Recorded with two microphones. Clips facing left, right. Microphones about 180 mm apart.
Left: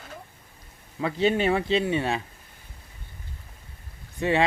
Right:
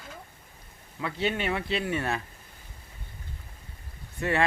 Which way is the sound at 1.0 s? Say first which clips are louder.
Left 6 dB; 30° left (ahead or behind).